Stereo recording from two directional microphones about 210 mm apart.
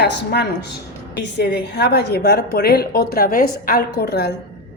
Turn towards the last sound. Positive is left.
turn(degrees=50)  # may be behind; listen again after turning